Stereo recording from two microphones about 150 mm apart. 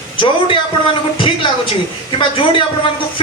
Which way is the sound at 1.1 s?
35° left (ahead or behind).